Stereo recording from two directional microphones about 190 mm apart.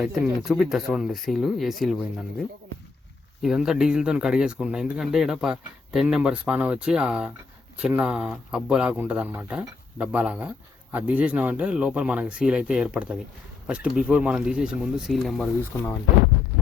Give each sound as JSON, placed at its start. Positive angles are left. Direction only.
{"t": 0.0, "sound": "speech", "side_deg": 0}
{"t": 3.4, "sound": "speech", "side_deg": 0}
{"t": 15.7, "sound": "speech", "side_deg": 15}